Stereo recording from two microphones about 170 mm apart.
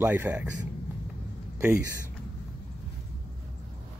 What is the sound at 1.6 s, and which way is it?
Speech, 15° right (ahead or behind).